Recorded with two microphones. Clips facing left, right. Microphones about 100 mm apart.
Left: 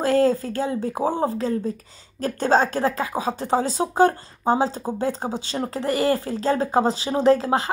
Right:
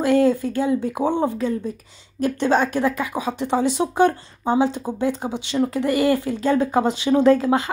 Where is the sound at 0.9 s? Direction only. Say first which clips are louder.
Right 2 dB; 35° left (ahead or behind).